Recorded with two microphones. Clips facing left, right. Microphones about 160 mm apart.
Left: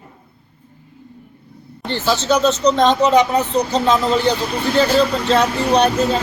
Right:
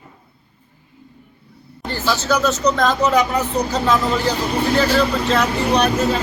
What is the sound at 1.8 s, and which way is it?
Speech, 25° left (ahead or behind).